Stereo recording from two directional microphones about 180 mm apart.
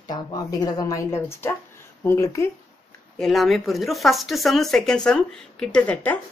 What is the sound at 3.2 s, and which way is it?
Speech, centre (ahead or behind).